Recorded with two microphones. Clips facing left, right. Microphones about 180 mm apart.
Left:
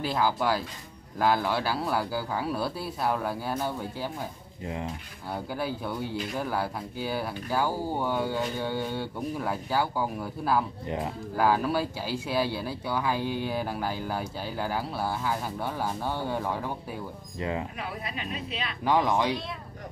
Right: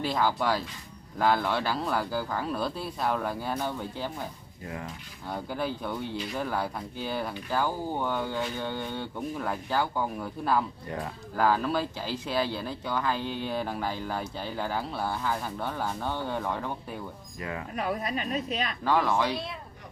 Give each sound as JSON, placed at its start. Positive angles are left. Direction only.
{"t": 0.0, "sound": "speech", "side_deg": 5}
{"t": 4.6, "sound": "a sound", "side_deg": 20}
{"t": 5.3, "sound": "speech", "side_deg": 5}
{"t": 17.4, "sound": "a sound", "side_deg": 25}
{"t": 17.7, "sound": "speech", "side_deg": -45}
{"t": 18.9, "sound": "speech", "side_deg": 15}